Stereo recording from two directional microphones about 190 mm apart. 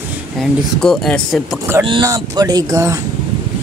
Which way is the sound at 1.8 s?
20° right (ahead or behind).